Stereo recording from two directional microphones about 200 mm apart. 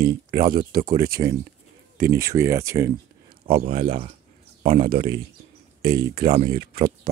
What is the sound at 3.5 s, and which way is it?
Speech, 30° right (ahead or behind).